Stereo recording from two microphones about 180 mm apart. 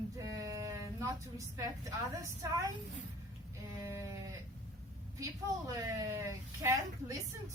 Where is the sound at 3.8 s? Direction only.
15° right (ahead or behind).